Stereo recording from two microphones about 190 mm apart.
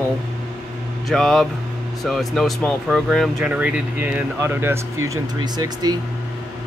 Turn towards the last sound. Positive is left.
turn(degrees=-20)  # may be behind; listen again after turning